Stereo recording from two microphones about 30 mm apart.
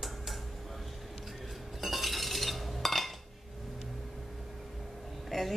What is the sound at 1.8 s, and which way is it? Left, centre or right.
Cutlery, centre.